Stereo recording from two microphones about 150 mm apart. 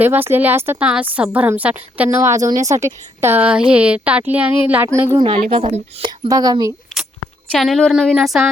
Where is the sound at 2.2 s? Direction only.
20° right (ahead or behind).